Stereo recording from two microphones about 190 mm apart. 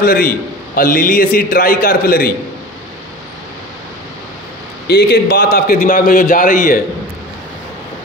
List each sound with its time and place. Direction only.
0.0 s a man's voice: 50° left (ahead or behind)
4.8 s a man's voice: 60° left (ahead or behind)